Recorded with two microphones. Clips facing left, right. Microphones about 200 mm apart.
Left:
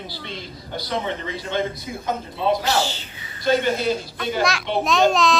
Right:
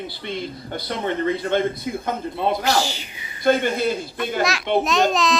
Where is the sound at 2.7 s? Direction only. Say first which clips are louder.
Even; 15° right (ahead or behind).